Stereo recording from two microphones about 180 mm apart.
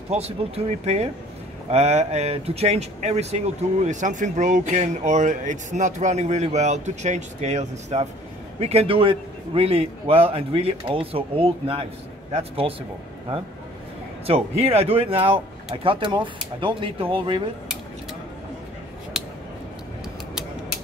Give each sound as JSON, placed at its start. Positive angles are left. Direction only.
{"t": 0.1, "sound": "speech", "side_deg": -35}
{"t": 14.2, "sound": "speech", "side_deg": -35}